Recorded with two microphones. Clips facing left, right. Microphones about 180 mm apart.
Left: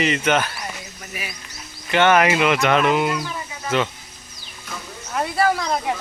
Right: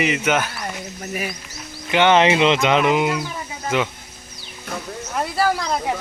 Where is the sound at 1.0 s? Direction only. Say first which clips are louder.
Right 9 dB; 45° right (ahead or behind).